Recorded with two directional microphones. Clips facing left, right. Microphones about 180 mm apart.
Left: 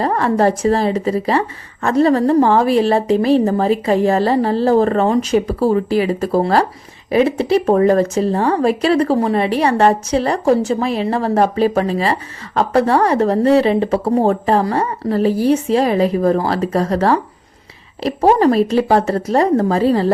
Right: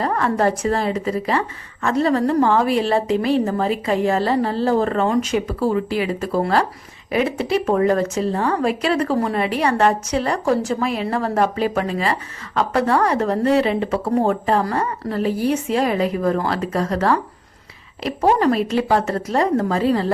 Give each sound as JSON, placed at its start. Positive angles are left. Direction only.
{"t": 0.0, "sound": "a woman's voice", "side_deg": 30}